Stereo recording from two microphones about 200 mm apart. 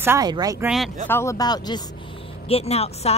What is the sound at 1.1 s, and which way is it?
Speech, 15° left (ahead or behind).